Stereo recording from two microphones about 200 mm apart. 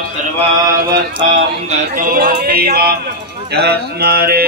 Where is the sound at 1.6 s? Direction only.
45° right (ahead or behind).